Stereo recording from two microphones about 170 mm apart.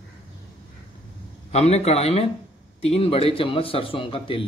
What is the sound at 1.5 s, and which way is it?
Speech, 40° left (ahead or behind).